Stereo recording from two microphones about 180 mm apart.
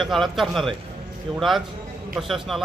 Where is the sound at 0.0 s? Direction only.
Centre (ahead or behind).